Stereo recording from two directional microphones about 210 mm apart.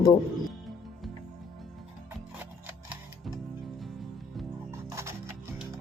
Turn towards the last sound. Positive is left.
turn(degrees=-15)  # may be behind; listen again after turning